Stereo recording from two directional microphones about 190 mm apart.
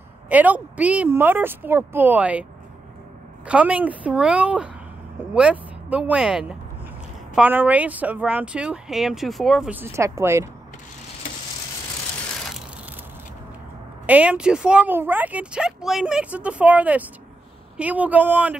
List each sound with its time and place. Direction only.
0.3 s speech: 10° right (ahead or behind)
3.4 s speech: 5° right (ahead or behind)
14.0 s speech: 5° right (ahead or behind)